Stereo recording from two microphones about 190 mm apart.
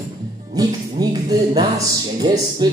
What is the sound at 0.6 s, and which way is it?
Music, 20° right (ahead or behind).